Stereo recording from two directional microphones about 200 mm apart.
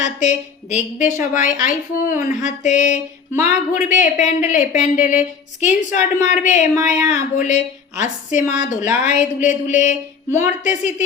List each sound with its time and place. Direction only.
0.0 s a woman's voice: 35° left (ahead or behind)